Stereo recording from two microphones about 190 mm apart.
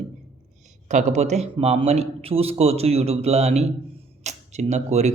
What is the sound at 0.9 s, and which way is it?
Speech, 40° right (ahead or behind).